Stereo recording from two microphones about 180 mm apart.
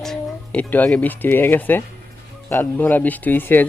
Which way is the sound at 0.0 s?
5° left (ahead or behind).